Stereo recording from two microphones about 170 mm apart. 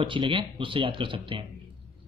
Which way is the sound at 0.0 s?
30° right (ahead or behind).